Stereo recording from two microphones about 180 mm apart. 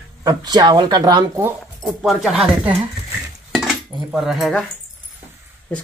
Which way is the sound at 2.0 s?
Centre (ahead or behind).